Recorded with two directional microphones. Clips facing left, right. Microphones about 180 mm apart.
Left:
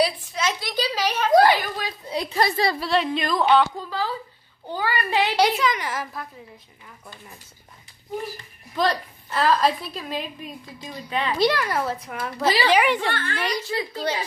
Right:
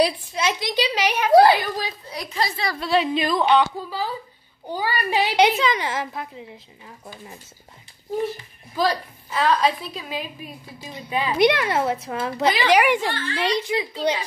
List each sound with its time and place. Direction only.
0.3 s a woman's voice: 20° right (ahead or behind)
1.3 s a sound: 30° right (ahead or behind)
2.0 s a sound: 25° left (ahead or behind)
2.3 s a woman's voice: 45° left (ahead or behind)
2.8 s a woman's voice: 5° right (ahead or behind)
4.6 s a woman's voice: 15° right (ahead or behind)
8.7 s a woman's voice: centre (ahead or behind)
11.4 s a woman's voice: 20° right (ahead or behind)
12.6 s speech: 10° right (ahead or behind)
13.1 s a woman's voice: 60° left (ahead or behind)
13.4 s speech: 20° right (ahead or behind)